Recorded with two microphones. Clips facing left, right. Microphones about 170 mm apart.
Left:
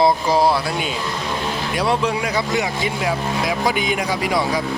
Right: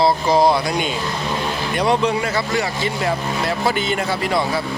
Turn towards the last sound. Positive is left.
turn(degrees=10)  # may be behind; listen again after turning